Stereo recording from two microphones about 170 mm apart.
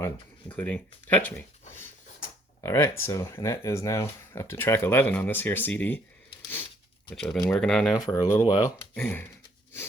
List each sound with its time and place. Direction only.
0.5 s speech: 10° left (ahead or behind)
7.1 s speech: centre (ahead or behind)